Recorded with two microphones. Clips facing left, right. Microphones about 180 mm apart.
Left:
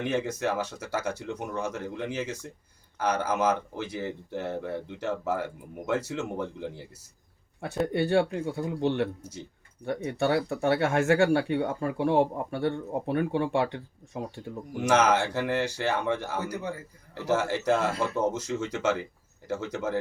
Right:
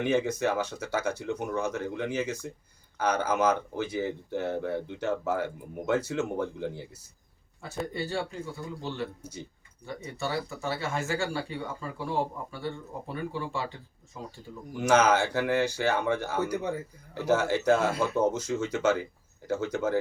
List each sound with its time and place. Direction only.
0.0 s speech: centre (ahead or behind)
7.6 s speech: 65° left (ahead or behind)
14.8 s speech: centre (ahead or behind)